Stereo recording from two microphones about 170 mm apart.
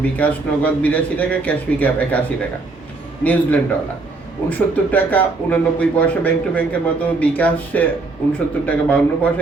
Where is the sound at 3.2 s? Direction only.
10° left (ahead or behind).